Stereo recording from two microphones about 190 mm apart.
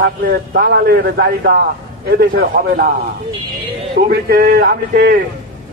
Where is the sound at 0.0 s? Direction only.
55° right (ahead or behind).